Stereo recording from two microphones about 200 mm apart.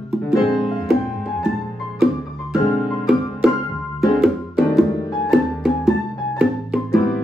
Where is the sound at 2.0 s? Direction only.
Centre (ahead or behind).